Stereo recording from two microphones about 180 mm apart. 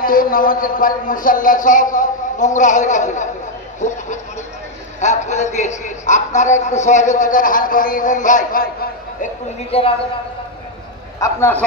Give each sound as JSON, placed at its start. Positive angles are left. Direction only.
{"t": 0.0, "sound": "a man's voice", "side_deg": 50}
{"t": 9.2, "sound": "speech", "side_deg": 30}
{"t": 11.1, "sound": "a man's voice", "side_deg": 15}